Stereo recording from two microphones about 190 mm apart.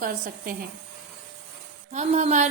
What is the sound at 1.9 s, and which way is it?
Speech, 40° right (ahead or behind).